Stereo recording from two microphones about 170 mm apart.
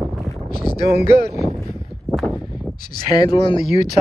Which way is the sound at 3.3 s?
35° left (ahead or behind).